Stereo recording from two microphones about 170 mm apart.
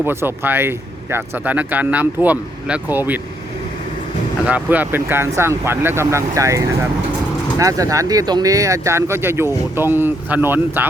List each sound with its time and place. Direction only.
0.0 s speech: 15° right (ahead or behind)
4.4 s speech: 10° right (ahead or behind)